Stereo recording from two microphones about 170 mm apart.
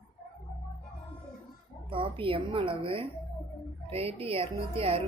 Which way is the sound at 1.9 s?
30° right (ahead or behind).